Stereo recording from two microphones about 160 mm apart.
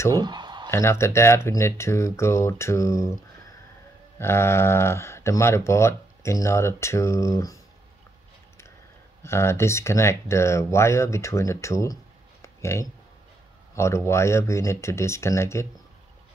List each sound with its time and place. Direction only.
0.1 s a sound: 25° right (ahead or behind)
0.7 s speech: 15° left (ahead or behind)
4.2 s speech: 15° left (ahead or behind)
9.2 s speech: 15° left (ahead or behind)